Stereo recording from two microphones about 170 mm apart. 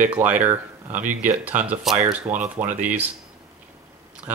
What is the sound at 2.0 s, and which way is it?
Speech, 10° right (ahead or behind).